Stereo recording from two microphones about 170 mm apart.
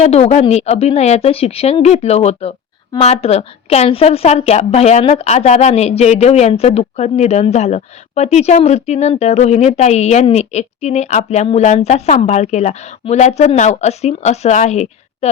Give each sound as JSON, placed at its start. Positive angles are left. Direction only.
{"t": 0.0, "sound": "a woman's voice", "side_deg": 40}